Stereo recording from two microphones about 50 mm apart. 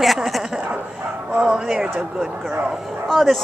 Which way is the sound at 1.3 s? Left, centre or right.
Centre.